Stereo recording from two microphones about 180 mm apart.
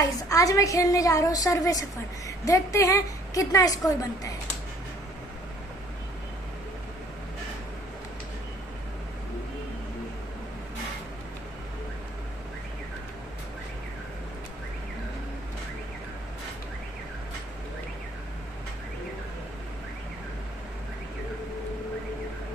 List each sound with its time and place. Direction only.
0.3 s a woman's voice: 20° left (ahead or behind)